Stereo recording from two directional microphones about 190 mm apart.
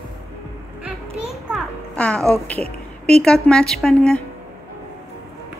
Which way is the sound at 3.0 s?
5° left (ahead or behind).